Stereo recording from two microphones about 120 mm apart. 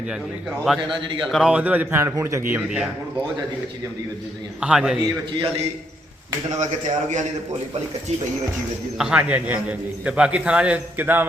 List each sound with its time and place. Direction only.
0.6 s a man's voice: centre (ahead or behind); by 2.6 s 20° right (ahead or behind)
2.6 s a man's voice: 5° right (ahead or behind)
4.6 s a man's voice: 5° right (ahead or behind)
6.6 s a man's voice: 90° right
9.0 s a man's voice: 10° right (ahead or behind)